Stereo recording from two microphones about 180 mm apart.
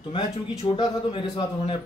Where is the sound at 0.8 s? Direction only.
30° left (ahead or behind).